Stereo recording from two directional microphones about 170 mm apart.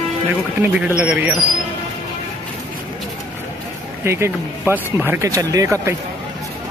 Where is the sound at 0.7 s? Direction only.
5° right (ahead or behind).